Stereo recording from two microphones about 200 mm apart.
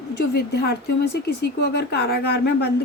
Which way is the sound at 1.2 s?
55° left (ahead or behind).